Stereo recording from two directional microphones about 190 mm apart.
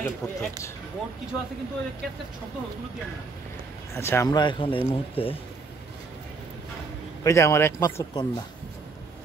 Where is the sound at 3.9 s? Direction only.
15° left (ahead or behind); by 5.3 s 30° left (ahead or behind).